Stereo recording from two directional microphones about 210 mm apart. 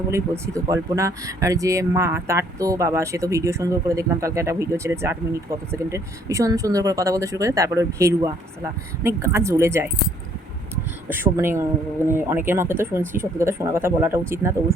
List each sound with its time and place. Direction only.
0.1 s speech: 15° right (ahead or behind)
11.1 s speech: 10° right (ahead or behind)